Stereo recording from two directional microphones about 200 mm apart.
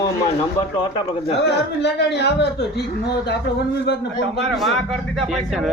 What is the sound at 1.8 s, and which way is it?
A man's voice, 60° left (ahead or behind).